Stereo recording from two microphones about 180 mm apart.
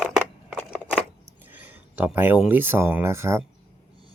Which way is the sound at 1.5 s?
10° right (ahead or behind).